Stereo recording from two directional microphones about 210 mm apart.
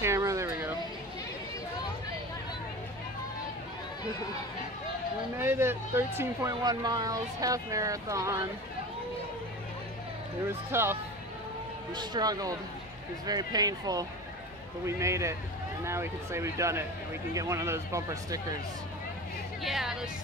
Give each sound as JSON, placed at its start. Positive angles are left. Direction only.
{"t": 0.0, "sound": "vehicle", "side_deg": -15}
{"t": 5.4, "sound": "speech", "side_deg": -10}
{"t": 10.7, "sound": "speech", "side_deg": -10}
{"t": 19.6, "sound": "speech", "side_deg": 0}